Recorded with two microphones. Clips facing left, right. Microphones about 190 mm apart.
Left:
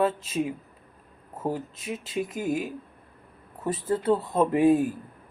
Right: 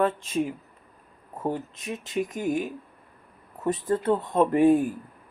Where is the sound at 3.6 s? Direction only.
5° left (ahead or behind).